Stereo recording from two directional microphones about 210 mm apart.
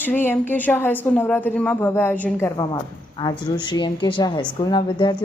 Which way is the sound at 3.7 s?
20° left (ahead or behind).